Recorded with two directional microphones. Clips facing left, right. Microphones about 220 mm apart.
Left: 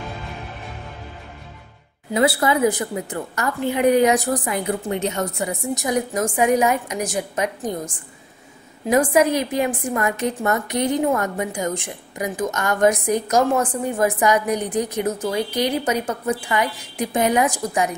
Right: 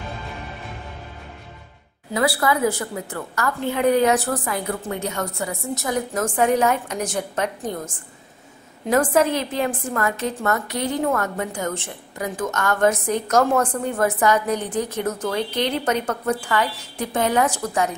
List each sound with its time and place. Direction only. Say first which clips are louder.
2.1 s a woman's voice: left 2 dB; 20° left (ahead or behind)